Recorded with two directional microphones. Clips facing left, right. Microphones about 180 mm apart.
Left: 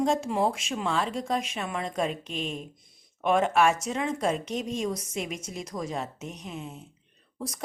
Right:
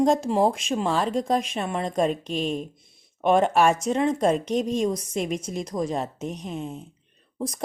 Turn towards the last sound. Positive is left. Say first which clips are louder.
# right 6 dB
turn(degrees=-30)  # may be behind; listen again after turning